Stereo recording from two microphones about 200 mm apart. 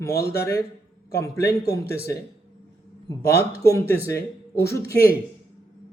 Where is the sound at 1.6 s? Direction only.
55° left (ahead or behind).